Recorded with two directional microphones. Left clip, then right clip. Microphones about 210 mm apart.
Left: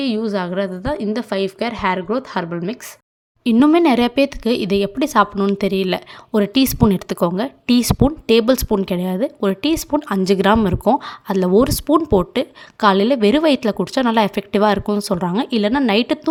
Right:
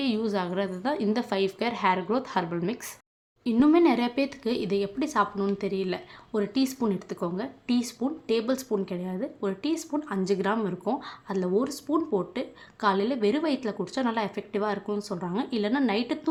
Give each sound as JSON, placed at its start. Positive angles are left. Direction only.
{"t": 0.0, "sound": "a woman's voice", "side_deg": 25}
{"t": 3.4, "sound": "speech", "side_deg": 35}